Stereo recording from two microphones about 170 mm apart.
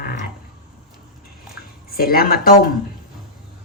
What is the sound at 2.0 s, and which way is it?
Speech, 60° left (ahead or behind).